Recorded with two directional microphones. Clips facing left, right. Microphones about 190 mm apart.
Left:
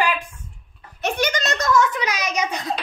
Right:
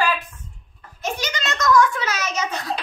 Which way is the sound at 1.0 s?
60° left (ahead or behind).